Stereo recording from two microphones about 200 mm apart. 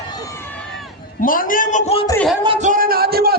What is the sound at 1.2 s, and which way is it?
Speech, 45° left (ahead or behind).